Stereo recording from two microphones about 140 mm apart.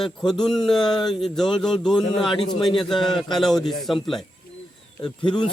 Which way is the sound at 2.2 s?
35° left (ahead or behind).